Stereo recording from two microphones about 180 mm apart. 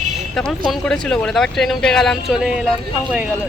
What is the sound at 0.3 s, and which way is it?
Speech, centre (ahead or behind).